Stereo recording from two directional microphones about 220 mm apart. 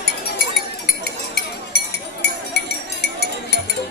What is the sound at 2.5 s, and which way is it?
Chink, 45° left (ahead or behind).